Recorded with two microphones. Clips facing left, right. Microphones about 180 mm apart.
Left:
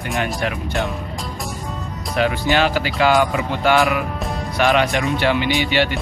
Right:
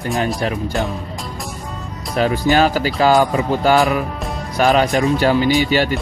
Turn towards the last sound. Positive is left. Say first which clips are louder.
# right 3 dB
turn(degrees=-40)  # may be behind; listen again after turning